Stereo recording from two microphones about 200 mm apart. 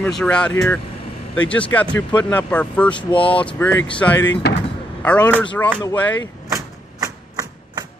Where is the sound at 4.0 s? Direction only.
10° left (ahead or behind).